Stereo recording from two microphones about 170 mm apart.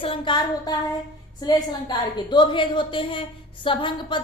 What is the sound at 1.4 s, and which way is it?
A woman's voice, 25° left (ahead or behind).